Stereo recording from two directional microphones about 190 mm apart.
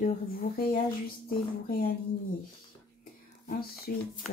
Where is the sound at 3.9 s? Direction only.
50° left (ahead or behind).